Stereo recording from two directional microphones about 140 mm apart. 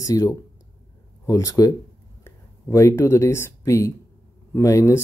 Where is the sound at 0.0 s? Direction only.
25° left (ahead or behind).